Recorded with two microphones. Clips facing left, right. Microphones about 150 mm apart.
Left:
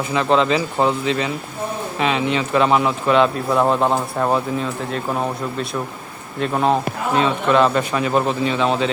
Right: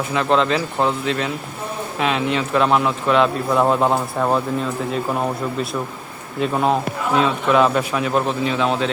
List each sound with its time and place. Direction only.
0.1 s speech: centre (ahead or behind)
6.4 s speech: centre (ahead or behind)